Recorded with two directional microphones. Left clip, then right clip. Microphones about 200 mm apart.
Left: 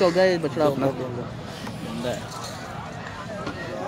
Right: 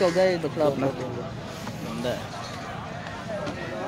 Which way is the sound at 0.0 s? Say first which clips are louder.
Left 2 dB; 15° left (ahead or behind).